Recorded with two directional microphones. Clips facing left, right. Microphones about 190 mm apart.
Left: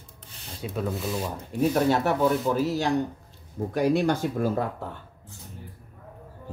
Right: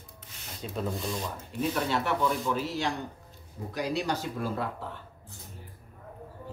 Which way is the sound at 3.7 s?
55° left (ahead or behind).